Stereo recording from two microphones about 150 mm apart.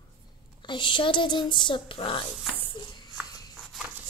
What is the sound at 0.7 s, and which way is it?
Speech, 35° left (ahead or behind).